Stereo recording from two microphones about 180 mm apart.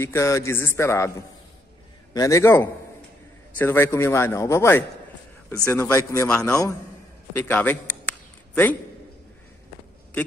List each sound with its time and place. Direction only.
0.0 s a man's voice: 15° left (ahead or behind)
2.1 s a man's voice: 15° left (ahead or behind)